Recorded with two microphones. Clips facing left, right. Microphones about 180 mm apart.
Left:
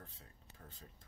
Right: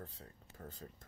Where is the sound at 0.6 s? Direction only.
65° right (ahead or behind).